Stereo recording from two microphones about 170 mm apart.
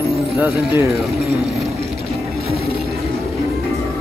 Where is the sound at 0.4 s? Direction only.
15° right (ahead or behind).